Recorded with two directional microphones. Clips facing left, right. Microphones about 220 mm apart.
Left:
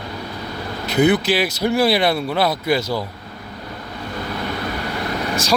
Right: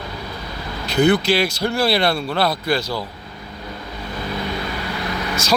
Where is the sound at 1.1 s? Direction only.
20° left (ahead or behind).